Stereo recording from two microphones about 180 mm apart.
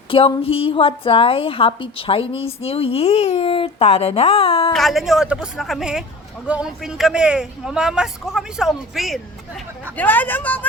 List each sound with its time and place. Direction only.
0.1 s a woman's voice: 30° left (ahead or behind)
4.7 s speech: centre (ahead or behind)
10.0 s speech: 10° left (ahead or behind)